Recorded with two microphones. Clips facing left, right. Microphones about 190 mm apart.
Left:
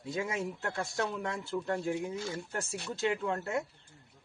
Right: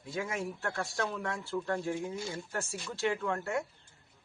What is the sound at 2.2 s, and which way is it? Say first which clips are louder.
Speech: left 1 dB; 10° right (ahead or behind).